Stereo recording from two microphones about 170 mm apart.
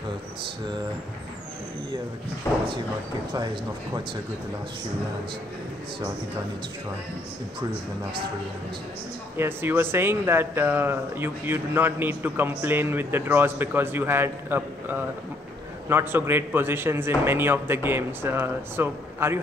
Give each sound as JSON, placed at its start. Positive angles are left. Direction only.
{"t": 2.4, "sound": "speech", "side_deg": 15}
{"t": 9.4, "sound": "speech", "side_deg": -15}